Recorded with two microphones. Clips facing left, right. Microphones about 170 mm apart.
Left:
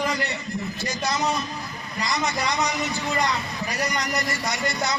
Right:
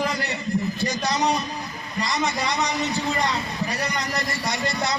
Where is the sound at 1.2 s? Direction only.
35° right (ahead or behind).